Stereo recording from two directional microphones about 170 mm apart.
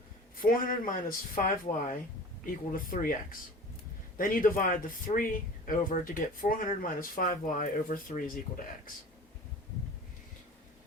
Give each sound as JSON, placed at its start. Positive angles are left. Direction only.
{"t": 0.4, "sound": "speech", "side_deg": 55}